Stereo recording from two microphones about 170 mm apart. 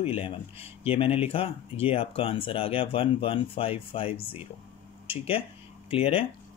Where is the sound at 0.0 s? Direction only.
35° left (ahead or behind).